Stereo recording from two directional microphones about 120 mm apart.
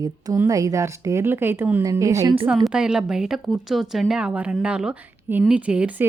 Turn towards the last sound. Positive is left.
turn(degrees=-10)  # may be behind; listen again after turning